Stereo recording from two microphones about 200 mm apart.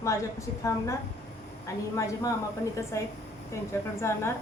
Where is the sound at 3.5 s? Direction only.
15° left (ahead or behind).